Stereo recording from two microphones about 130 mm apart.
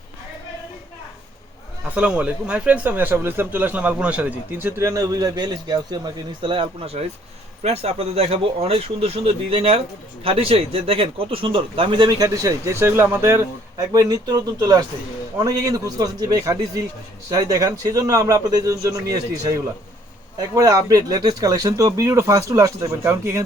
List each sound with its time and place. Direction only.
2.0 s speech: 10° right (ahead or behind); by 19.0 s 25° right (ahead or behind)
20.4 s speech: 25° right (ahead or behind)